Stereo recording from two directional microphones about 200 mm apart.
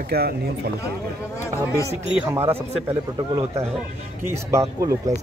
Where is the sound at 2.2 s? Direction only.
10° right (ahead or behind).